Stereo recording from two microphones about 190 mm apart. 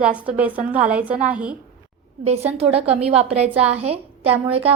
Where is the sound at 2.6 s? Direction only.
30° right (ahead or behind).